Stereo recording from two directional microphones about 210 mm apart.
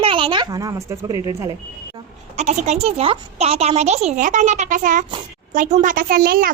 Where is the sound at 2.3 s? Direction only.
30° right (ahead or behind).